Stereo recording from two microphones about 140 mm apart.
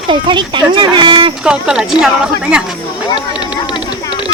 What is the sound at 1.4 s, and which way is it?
A woman's voice, 5° right (ahead or behind).